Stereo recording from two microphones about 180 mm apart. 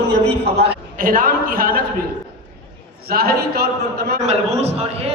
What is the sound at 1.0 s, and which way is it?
Speech, 50° right (ahead or behind).